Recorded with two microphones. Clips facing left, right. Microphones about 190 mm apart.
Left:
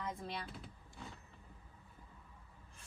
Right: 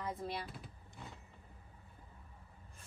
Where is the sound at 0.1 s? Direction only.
5° right (ahead or behind).